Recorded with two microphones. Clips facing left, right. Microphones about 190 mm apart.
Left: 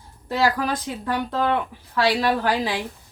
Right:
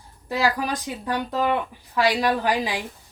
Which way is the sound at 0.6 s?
15° right (ahead or behind).